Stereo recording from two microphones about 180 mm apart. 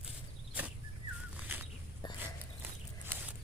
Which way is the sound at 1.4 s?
10° right (ahead or behind).